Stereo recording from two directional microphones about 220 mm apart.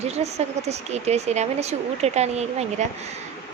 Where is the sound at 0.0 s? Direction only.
30° right (ahead or behind).